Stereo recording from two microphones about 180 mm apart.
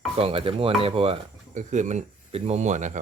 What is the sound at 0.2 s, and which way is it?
Speech, 30° right (ahead or behind).